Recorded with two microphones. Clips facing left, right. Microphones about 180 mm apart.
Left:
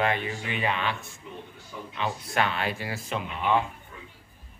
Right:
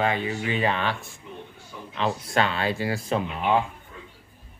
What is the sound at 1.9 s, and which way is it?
Speech, 30° right (ahead or behind).